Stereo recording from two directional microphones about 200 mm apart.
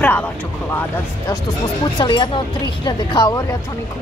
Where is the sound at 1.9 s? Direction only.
25° left (ahead or behind).